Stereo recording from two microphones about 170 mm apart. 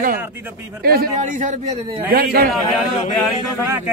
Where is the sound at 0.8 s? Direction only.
65° right (ahead or behind).